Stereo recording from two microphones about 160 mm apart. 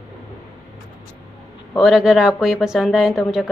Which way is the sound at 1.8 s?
Centre (ahead or behind).